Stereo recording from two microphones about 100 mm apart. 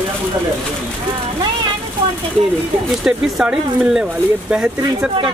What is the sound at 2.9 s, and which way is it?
Speech, 5° right (ahead or behind).